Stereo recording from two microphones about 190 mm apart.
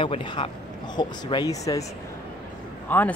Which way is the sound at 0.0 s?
25° left (ahead or behind).